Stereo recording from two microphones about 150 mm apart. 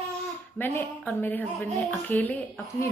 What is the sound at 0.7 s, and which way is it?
A woman's voice, 10° left (ahead or behind).